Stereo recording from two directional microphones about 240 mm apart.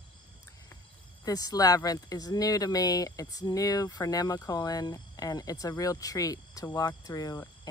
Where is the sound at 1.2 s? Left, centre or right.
Centre.